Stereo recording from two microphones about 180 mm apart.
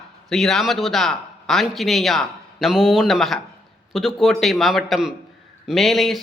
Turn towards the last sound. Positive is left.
turn(degrees=0)  # may be behind; listen again after turning